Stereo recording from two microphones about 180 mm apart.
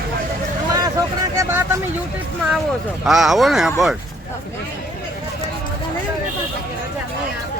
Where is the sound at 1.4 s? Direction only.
15° right (ahead or behind).